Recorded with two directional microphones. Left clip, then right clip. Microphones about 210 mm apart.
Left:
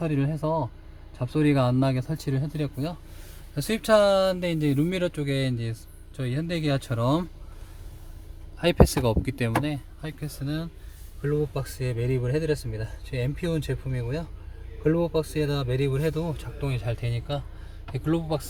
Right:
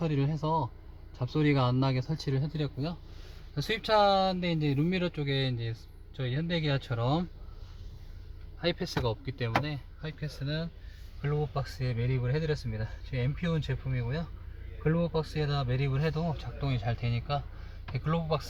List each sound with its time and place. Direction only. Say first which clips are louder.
0.0 s speech: left 4 dB; 15° left (ahead or behind); by 7.3 s 30° left (ahead or behind)
8.5 s speech: left 10 dB; 30° left (ahead or behind)